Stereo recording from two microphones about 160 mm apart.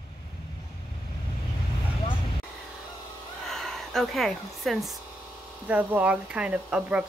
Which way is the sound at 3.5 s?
Centre (ahead or behind).